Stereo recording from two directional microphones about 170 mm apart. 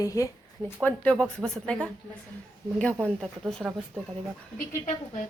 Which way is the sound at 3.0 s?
10° right (ahead or behind).